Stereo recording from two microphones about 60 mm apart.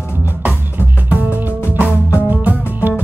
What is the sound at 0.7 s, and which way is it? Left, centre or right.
Music, right.